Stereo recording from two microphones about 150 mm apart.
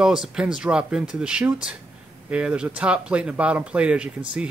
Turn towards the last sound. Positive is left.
turn(degrees=-10)  # may be behind; listen again after turning